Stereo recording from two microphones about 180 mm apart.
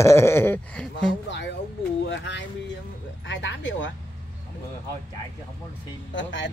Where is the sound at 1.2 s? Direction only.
80° left.